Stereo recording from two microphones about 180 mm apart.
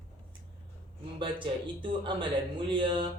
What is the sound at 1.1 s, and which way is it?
A man's voice, 25° right (ahead or behind).